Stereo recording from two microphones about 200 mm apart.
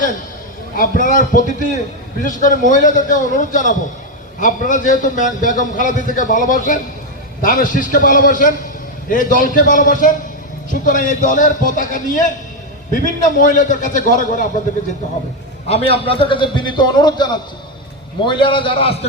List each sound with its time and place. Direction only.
0.8 s a man's voice: 40° left (ahead or behind)
15.7 s a man's voice: 30° left (ahead or behind)